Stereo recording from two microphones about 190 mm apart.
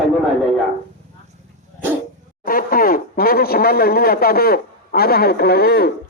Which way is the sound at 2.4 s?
50° left (ahead or behind).